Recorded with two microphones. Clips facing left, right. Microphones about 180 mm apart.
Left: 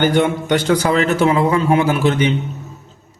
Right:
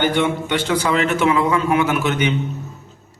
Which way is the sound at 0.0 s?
45° left (ahead or behind).